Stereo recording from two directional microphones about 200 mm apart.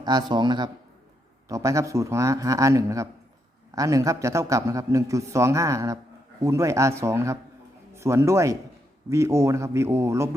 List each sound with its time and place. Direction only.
0.0 s a man's voice: 20° right (ahead or behind)